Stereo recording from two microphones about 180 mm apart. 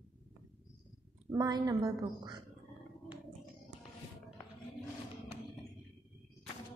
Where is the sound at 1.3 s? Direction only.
20° right (ahead or behind).